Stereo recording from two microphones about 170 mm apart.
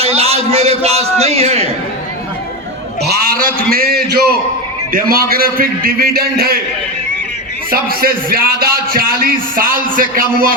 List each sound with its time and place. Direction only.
0.0 s a man's voice: 35° right (ahead or behind)
3.0 s a sound: 65° right (ahead or behind)
3.7 s a man's voice: 65° right (ahead or behind)
7.7 s a man's voice: 60° right (ahead or behind)